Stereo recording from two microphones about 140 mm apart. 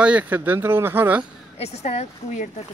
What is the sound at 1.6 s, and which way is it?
Speech, 50° left (ahead or behind).